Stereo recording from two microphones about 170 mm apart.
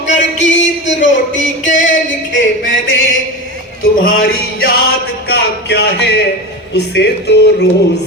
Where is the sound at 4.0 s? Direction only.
65° left (ahead or behind).